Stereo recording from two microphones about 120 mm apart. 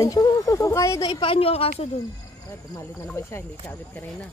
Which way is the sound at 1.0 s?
45° left (ahead or behind).